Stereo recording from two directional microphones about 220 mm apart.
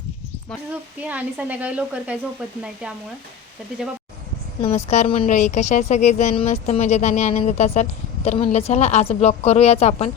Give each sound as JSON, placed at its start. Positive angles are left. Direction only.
{"t": 1.0, "sound": "speech", "side_deg": -5}
{"t": 4.6, "sound": "a woman's voice", "side_deg": 30}